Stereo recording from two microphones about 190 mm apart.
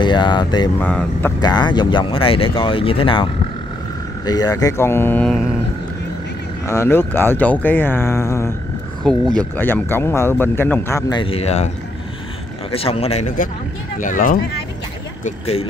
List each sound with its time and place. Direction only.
0.0 s speech: 25° left (ahead or behind)
0.7 s speech: 10° left (ahead or behind)
1.4 s speech: 20° left (ahead or behind)
4.3 s speech: 20° left (ahead or behind); by 5.5 s centre (ahead or behind)
6.7 s speech: 10° left (ahead or behind)
9.0 s speech: 5° left (ahead or behind); by 11.7 s 35° left (ahead or behind)
12.7 s speech: 30° left (ahead or behind); by 14.4 s 45° left (ahead or behind)
15.2 s speech: 30° left (ahead or behind)